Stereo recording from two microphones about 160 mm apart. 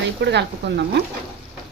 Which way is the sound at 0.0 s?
90° right.